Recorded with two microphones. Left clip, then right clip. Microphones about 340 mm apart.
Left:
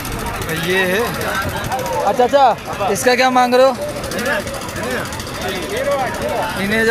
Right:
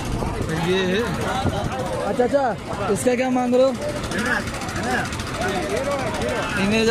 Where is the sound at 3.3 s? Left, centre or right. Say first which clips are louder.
Left 5 dB; left.